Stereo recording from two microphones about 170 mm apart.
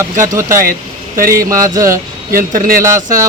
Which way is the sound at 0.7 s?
55° right (ahead or behind).